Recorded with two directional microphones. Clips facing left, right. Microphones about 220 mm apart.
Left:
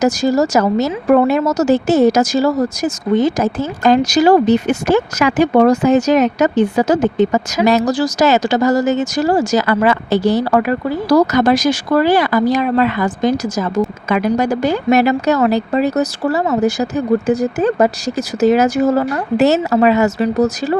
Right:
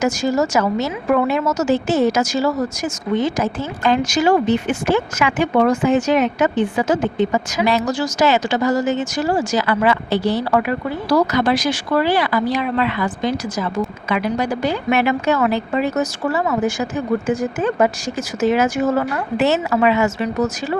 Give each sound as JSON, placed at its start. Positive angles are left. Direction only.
{"t": 0.0, "sound": "a woman's voice", "side_deg": 35}